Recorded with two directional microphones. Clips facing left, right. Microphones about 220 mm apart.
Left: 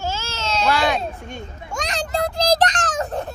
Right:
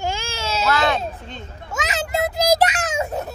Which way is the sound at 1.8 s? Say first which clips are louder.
Right 1 dB; 5° right (ahead or behind).